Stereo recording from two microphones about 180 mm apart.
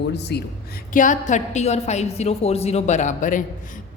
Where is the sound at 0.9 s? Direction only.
45° left (ahead or behind).